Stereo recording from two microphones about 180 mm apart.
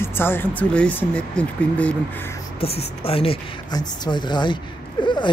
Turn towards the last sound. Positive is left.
turn(degrees=25)  # may be behind; listen again after turning